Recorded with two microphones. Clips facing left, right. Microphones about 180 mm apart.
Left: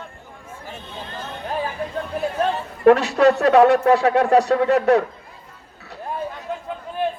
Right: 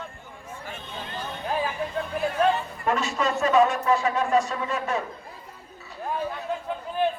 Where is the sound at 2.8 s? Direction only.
70° left (ahead or behind).